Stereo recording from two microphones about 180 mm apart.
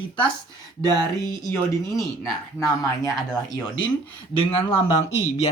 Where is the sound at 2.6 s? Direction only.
20° left (ahead or behind).